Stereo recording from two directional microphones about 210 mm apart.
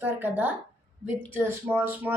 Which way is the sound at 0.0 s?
10° right (ahead or behind).